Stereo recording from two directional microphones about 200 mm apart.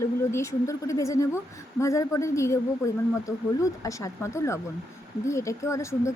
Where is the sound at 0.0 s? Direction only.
15° left (ahead or behind).